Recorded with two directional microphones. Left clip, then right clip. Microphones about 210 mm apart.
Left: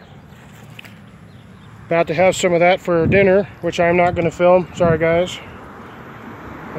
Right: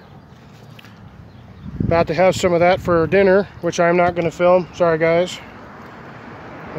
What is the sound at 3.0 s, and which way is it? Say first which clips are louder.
Speech: left 1 dB; 15° right (ahead or behind).